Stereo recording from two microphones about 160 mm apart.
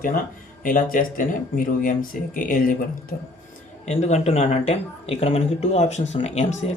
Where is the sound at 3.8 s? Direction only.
45° left (ahead or behind).